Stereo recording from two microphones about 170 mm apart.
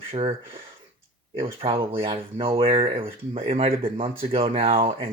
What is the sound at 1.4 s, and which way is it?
Speech, 35° right (ahead or behind).